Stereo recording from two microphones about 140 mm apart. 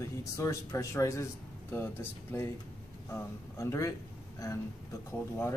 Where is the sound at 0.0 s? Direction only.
20° left (ahead or behind).